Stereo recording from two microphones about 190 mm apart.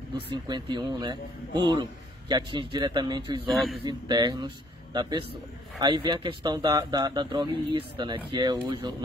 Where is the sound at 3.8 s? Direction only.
25° right (ahead or behind).